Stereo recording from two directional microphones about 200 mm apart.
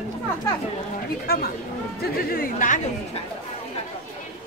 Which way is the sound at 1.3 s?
50° left (ahead or behind).